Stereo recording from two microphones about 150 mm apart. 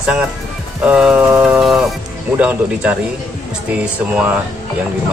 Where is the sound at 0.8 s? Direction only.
5° right (ahead or behind).